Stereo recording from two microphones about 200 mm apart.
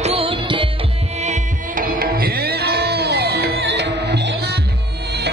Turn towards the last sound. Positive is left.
turn(degrees=-60)  # may be behind; listen again after turning